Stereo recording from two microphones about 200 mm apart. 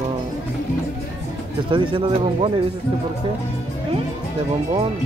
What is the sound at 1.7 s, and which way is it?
Speech, 25° right (ahead or behind).